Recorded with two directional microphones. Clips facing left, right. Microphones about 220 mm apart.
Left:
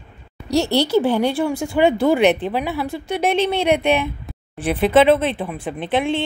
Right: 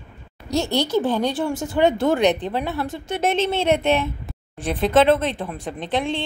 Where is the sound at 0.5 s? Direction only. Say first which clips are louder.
Left 4 dB; 70° left (ahead or behind).